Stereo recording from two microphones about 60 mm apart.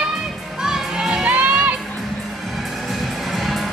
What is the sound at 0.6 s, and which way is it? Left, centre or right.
Children shouting, centre.